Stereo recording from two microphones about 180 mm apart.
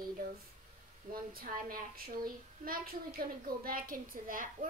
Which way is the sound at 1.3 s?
55° right (ahead or behind).